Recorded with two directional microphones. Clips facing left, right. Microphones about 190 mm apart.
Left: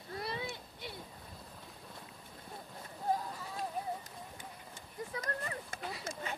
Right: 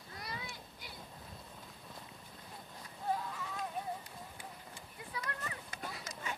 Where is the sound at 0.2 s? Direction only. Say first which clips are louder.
Left 6 dB; 25° left (ahead or behind).